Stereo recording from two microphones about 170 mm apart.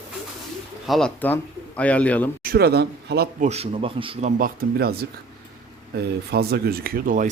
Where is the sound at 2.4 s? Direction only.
65° right (ahead or behind).